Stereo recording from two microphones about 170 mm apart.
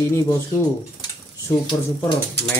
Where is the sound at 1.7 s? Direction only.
25° left (ahead or behind).